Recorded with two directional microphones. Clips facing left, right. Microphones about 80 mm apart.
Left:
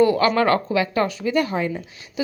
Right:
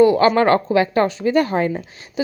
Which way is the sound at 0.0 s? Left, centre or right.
Right.